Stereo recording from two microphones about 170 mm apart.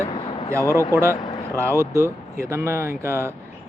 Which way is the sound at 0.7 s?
15° left (ahead or behind).